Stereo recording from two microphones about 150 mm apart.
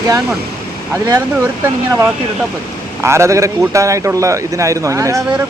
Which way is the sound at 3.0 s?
20° right (ahead or behind).